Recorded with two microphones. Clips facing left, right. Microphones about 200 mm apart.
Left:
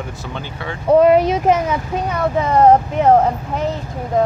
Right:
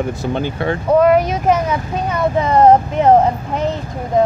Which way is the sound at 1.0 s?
25° left (ahead or behind).